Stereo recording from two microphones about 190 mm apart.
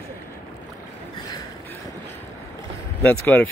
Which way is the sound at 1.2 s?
20° left (ahead or behind).